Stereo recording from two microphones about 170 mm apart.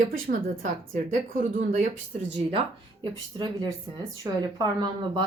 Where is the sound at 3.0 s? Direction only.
25° right (ahead or behind).